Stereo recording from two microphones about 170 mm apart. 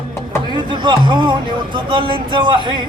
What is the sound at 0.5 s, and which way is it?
Speech, 25° right (ahead or behind).